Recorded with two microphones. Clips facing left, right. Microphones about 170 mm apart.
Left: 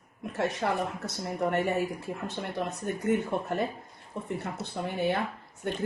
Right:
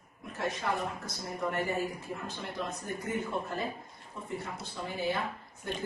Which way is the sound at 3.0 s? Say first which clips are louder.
Left 7 dB; 70° left (ahead or behind).